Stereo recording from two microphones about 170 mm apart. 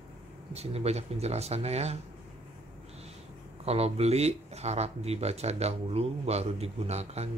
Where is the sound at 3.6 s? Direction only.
40° right (ahead or behind).